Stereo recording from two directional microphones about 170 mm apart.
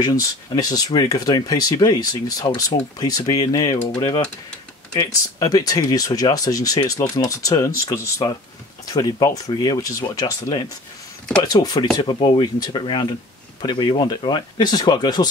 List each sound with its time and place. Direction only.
0.0 s speech: 20° left (ahead or behind)
4.9 s speech: 20° left (ahead or behind)